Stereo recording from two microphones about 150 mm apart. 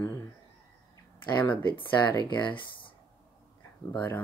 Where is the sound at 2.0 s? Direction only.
30° left (ahead or behind).